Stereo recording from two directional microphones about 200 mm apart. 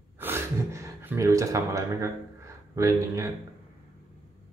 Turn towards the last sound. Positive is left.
turn(degrees=-15)  # may be behind; listen again after turning